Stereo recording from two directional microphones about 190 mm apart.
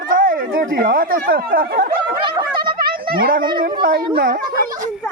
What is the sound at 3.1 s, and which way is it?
Speech, 50° right (ahead or behind).